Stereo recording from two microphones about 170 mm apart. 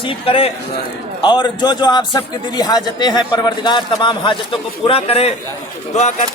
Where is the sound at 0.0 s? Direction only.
30° left (ahead or behind).